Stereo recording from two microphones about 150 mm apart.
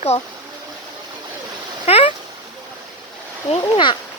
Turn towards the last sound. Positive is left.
turn(degrees=35)  # may be behind; listen again after turning